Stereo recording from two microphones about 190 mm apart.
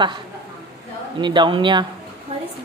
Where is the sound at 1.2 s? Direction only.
25° right (ahead or behind).